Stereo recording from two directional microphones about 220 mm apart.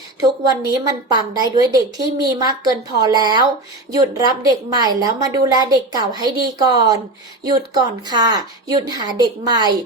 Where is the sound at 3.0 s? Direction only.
20° right (ahead or behind).